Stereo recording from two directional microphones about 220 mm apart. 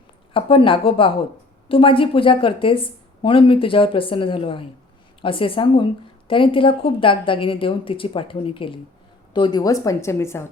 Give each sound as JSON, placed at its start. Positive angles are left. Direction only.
{"t": 0.3, "sound": "a woman's voice", "side_deg": 25}